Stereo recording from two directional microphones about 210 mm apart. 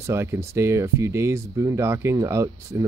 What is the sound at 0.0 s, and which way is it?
Speech, 10° right (ahead or behind).